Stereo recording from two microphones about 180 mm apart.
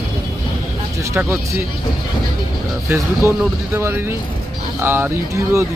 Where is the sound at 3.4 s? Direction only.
15° right (ahead or behind).